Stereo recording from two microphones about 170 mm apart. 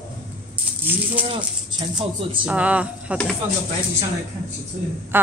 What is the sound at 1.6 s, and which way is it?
Speech, 30° right (ahead or behind).